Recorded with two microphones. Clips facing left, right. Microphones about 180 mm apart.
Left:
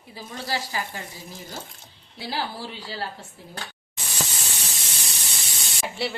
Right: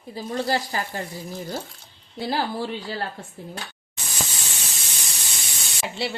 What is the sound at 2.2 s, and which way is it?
Speech, 50° right (ahead or behind).